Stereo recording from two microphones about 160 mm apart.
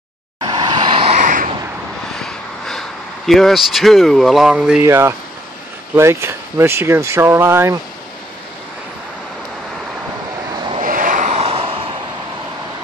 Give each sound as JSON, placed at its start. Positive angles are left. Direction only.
{"t": 0.4, "sound": "vehicle", "side_deg": -30}
{"t": 1.1, "sound": "a sound", "side_deg": -55}
{"t": 2.1, "sound": "vehicle", "side_deg": 5}
{"t": 3.3, "sound": "speech", "side_deg": 0}
{"t": 4.8, "sound": "speech", "side_deg": -15}
{"t": 10.8, "sound": "vehicle", "side_deg": -60}